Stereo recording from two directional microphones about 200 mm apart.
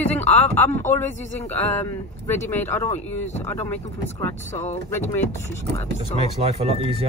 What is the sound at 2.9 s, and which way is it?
Speech, 35° left (ahead or behind).